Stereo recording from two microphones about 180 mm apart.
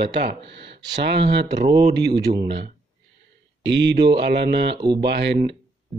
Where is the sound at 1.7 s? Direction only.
35° right (ahead or behind).